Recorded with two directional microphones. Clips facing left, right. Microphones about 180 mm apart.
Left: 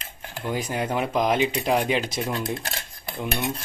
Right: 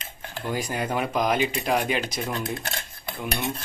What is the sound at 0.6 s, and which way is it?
Speech, centre (ahead or behind).